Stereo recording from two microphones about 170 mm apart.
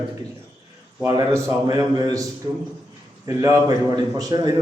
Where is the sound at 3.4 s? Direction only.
20° right (ahead or behind).